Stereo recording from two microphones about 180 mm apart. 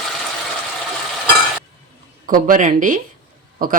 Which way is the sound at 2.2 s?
50° right (ahead or behind).